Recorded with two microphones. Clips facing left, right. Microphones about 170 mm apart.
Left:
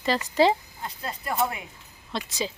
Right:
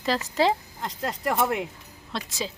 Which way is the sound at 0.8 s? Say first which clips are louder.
Right 5 dB; 90° right.